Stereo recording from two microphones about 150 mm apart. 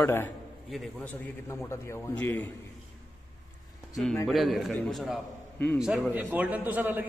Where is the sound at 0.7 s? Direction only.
Centre (ahead or behind).